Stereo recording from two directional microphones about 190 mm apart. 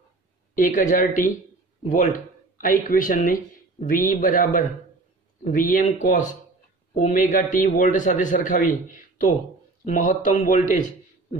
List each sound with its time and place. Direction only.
0.6 s a man's voice: 45° left (ahead or behind)